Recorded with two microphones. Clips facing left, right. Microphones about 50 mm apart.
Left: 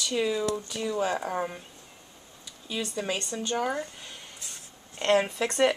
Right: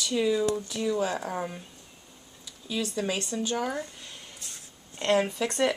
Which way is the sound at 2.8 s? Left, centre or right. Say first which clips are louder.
Right 1 dB; centre.